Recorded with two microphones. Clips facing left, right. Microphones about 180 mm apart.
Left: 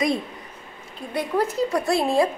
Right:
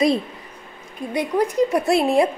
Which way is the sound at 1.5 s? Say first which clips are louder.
Right 4 dB; 20° right (ahead or behind).